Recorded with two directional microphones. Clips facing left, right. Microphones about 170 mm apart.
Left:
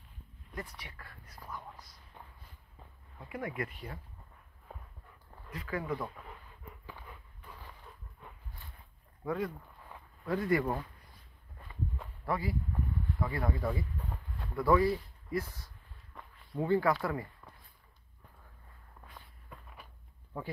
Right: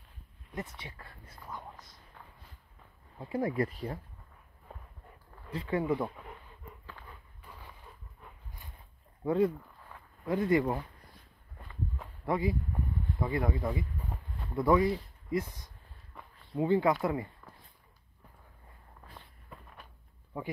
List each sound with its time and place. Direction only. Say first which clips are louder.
0.5 s a sound: right 3 dB; 20° right (ahead or behind)
3.2 s speech: right 7 dB; 30° right (ahead or behind)
5.5 s speech: right 6 dB; 25° right (ahead or behind)
9.2 s speech: right 7 dB; 30° right (ahead or behind)
12.3 s speech: right 4 dB; 20° right (ahead or behind)
19.5 s a sound: right 1 dB; centre (ahead or behind)